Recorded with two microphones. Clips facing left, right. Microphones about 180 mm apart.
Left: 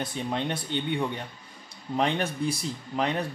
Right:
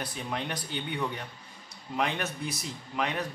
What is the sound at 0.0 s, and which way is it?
Speech, 25° left (ahead or behind).